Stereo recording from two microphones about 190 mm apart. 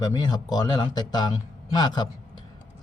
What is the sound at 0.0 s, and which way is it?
A man's voice, 20° left (ahead or behind).